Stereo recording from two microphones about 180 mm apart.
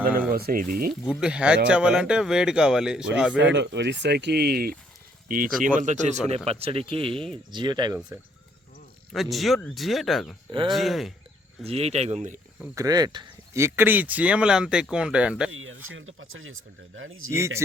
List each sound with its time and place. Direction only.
0.2 s speech: 55° right (ahead or behind)
1.2 s speech: 5° right (ahead or behind)
3.3 s speech: 80° right; by 7.9 s 25° right (ahead or behind)
9.1 s speech: centre (ahead or behind)
11.6 s speech: 35° right (ahead or behind)
12.7 s speech: 20° right (ahead or behind)
15.9 s speech: 90° right
17.3 s speech: 15° right (ahead or behind)